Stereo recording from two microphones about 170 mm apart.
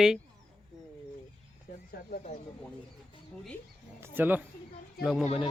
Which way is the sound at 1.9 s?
60° left (ahead or behind).